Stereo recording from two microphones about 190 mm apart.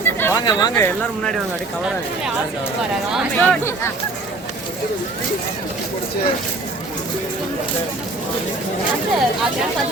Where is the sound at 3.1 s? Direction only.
5° left (ahead or behind).